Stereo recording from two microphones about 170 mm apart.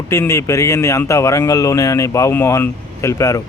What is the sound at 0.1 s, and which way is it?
Speech, 15° left (ahead or behind).